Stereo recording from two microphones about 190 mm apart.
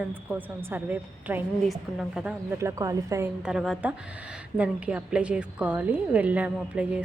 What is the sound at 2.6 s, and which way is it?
Speech, 15° right (ahead or behind).